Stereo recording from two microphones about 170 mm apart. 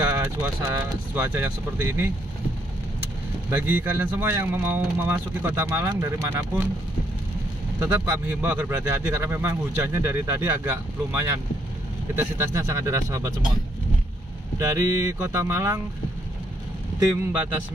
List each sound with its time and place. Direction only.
0.0 s speech: 10° right (ahead or behind)
3.4 s speech: 10° right (ahead or behind)
7.8 s speech: 15° right (ahead or behind)
14.6 s speech: 20° right (ahead or behind)